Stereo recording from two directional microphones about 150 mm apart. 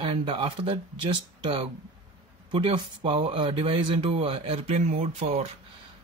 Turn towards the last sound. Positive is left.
turn(degrees=-45)  # may be behind; listen again after turning